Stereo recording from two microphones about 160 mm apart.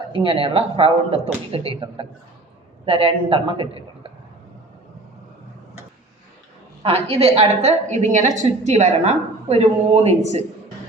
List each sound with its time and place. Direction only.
0.1 s speech: 35° right (ahead or behind)
6.8 s a woman's voice: 40° right (ahead or behind)